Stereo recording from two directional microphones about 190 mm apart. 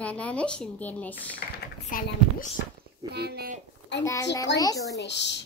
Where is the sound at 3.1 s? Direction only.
60° right (ahead or behind).